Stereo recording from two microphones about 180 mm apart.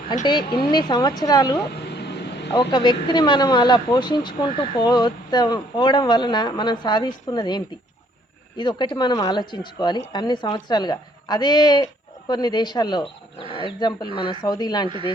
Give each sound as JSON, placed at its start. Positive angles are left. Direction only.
{"t": 0.3, "sound": "speech", "side_deg": 25}
{"t": 1.7, "sound": "a sound", "side_deg": 65}
{"t": 2.6, "sound": "speech", "side_deg": 25}
{"t": 14.8, "sound": "speech", "side_deg": -30}